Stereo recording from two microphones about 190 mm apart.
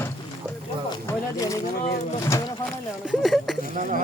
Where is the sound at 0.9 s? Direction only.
20° left (ahead or behind).